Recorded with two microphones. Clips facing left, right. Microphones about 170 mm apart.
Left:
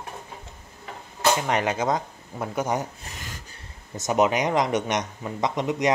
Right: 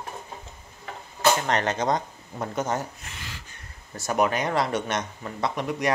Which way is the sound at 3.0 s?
40° left (ahead or behind).